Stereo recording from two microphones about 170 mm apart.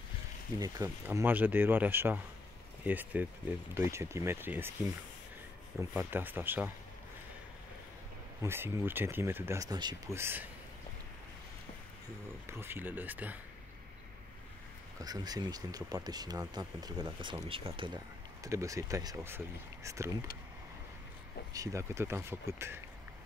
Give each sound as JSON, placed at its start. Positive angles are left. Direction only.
{"t": 0.6, "sound": "speech", "side_deg": -20}
{"t": 5.8, "sound": "speech", "side_deg": -10}
{"t": 8.4, "sound": "speech", "side_deg": -15}
{"t": 10.1, "sound": "speech", "side_deg": -15}
{"t": 12.4, "sound": "speech", "side_deg": -15}
{"t": 15.0, "sound": "speech", "side_deg": -25}
{"t": 21.5, "sound": "speech", "side_deg": -15}